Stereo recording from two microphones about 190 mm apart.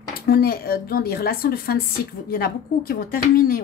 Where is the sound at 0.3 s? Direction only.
55° left (ahead or behind).